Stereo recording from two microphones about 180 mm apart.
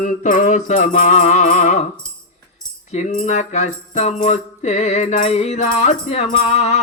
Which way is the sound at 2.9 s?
45° left (ahead or behind).